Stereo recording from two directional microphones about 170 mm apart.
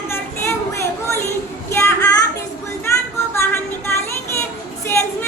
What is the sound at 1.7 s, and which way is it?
Child singing, 15° left (ahead or behind).